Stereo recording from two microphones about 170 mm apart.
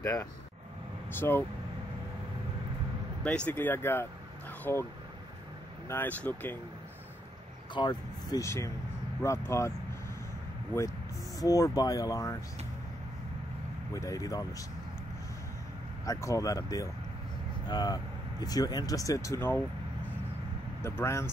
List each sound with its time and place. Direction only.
0.0 s speech: 20° left (ahead or behind)
3.3 s speech: 10° left (ahead or behind)
5.9 s speech: 10° left (ahead or behind)
7.7 s speech: 25° left (ahead or behind)
11.3 s speech: 20° left (ahead or behind)
13.9 s speech: 20° left (ahead or behind)
16.1 s speech: 20° left (ahead or behind)
20.8 s speech: 15° left (ahead or behind)